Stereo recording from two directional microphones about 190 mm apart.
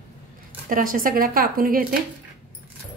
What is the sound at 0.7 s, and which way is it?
A woman's voice, 45° right (ahead or behind).